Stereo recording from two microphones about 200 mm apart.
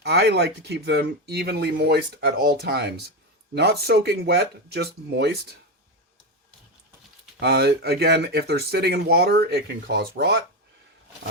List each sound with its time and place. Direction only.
0.0 s speech: 55° right (ahead or behind)
7.3 s speech: 55° right (ahead or behind)